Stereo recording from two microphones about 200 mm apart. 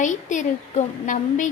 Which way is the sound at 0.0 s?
40° left (ahead or behind).